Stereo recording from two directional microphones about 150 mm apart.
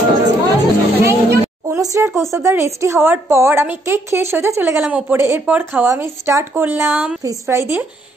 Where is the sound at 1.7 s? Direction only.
20° right (ahead or behind).